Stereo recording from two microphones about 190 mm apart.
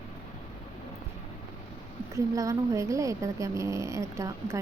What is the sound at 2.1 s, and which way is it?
Speech, 15° right (ahead or behind).